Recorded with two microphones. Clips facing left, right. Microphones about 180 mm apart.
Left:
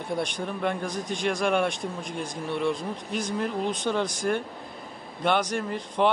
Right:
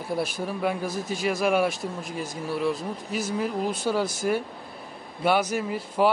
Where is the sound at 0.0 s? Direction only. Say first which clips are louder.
Right 1 dB; 5° right (ahead or behind).